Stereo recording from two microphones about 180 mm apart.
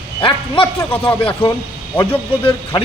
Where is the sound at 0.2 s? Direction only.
30° left (ahead or behind).